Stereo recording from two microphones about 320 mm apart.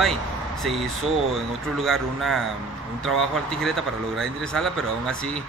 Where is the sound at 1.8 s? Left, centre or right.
Centre.